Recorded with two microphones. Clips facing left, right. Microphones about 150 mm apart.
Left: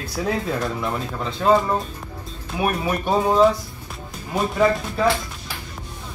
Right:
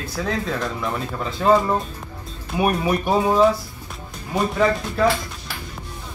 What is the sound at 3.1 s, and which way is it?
Speech, centre (ahead or behind).